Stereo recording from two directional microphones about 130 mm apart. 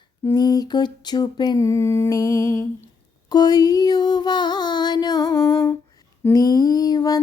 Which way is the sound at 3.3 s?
30° left (ahead or behind).